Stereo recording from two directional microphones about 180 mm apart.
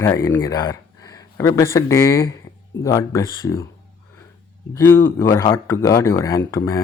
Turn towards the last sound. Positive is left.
turn(degrees=15)  # may be behind; listen again after turning